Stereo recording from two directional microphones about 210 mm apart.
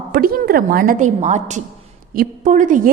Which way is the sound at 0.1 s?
45° right (ahead or behind).